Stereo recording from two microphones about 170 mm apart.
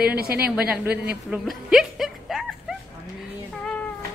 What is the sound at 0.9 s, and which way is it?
Speech, 70° right (ahead or behind).